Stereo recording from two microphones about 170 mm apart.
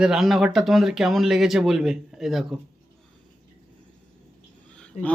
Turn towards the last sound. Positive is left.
turn(degrees=40)  # may be behind; listen again after turning